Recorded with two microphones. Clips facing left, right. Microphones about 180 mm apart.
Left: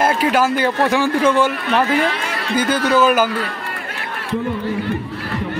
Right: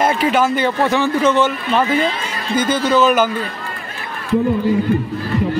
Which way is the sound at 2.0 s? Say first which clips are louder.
Even; 70° left (ahead or behind).